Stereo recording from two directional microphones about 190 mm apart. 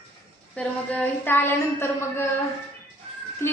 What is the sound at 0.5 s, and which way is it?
A woman's voice, 5° left (ahead or behind).